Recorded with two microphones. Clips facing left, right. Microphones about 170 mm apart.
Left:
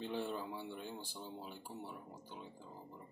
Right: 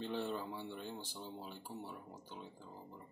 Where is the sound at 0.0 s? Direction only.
5° left (ahead or behind).